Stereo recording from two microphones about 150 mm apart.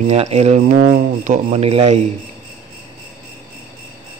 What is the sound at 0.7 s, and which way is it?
Speech, 60° right (ahead or behind).